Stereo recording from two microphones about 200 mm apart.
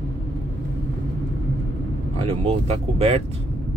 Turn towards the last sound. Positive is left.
turn(degrees=-30)  # may be behind; listen again after turning